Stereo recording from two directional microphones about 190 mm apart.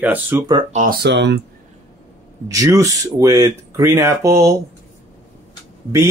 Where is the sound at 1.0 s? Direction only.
60° right (ahead or behind).